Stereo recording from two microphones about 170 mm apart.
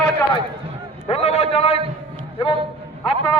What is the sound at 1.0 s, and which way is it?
Speech, 35° left (ahead or behind).